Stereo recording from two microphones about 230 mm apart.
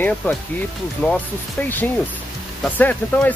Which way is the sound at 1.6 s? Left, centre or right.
Centre.